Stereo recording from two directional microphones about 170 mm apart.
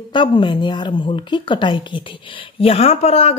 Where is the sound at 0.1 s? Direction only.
30° left (ahead or behind).